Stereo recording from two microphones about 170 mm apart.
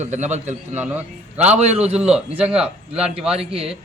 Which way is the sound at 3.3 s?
35° right (ahead or behind).